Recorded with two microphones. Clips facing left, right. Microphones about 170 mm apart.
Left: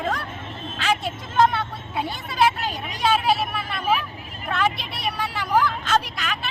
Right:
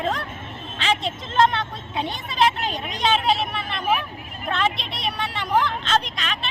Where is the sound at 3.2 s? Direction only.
25° right (ahead or behind).